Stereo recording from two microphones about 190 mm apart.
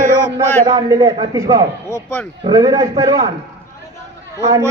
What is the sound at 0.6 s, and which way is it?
A man's voice, 20° right (ahead or behind).